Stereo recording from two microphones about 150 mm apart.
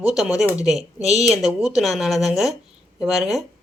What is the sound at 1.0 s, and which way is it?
Speech, 45° right (ahead or behind).